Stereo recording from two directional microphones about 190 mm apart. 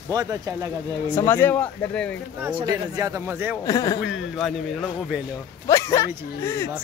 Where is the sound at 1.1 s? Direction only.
15° left (ahead or behind).